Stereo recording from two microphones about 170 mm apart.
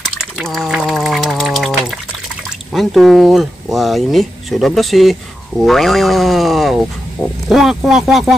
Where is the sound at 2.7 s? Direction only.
Centre (ahead or behind).